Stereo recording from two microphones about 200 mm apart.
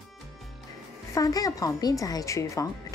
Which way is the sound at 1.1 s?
15° left (ahead or behind).